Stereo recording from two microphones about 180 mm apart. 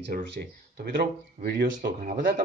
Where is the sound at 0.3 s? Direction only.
65° right (ahead or behind).